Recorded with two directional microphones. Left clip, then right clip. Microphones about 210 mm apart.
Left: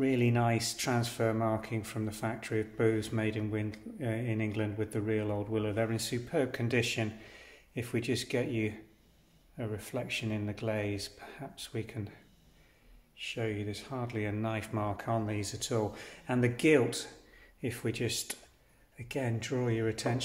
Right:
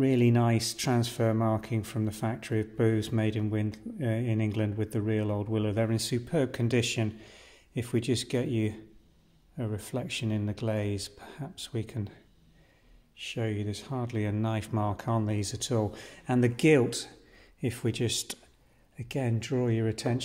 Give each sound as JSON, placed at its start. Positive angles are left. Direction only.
{"t": 0.0, "sound": "speech", "side_deg": -45}
{"t": 13.1, "sound": "speech", "side_deg": -40}